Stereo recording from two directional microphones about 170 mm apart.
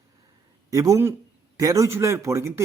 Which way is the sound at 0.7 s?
20° right (ahead or behind).